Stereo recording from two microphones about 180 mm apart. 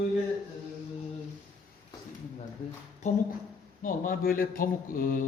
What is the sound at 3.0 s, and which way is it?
Speech, 40° left (ahead or behind).